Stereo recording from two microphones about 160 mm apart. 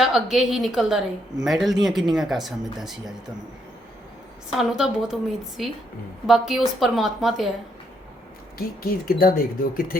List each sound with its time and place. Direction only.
0.0 s a woman's voice: centre (ahead or behind)
4.5 s a woman's voice: centre (ahead or behind)
8.5 s speech: 65° left (ahead or behind)